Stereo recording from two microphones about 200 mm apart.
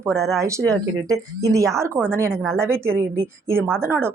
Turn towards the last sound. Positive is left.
turn(degrees=-10)  # may be behind; listen again after turning